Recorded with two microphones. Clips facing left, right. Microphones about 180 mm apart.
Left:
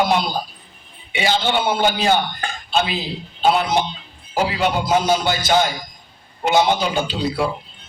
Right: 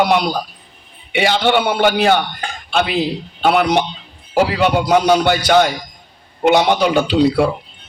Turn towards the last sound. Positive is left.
turn(degrees=-70)  # may be behind; listen again after turning